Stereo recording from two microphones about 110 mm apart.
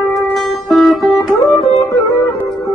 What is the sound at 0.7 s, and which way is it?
Music, centre (ahead or behind).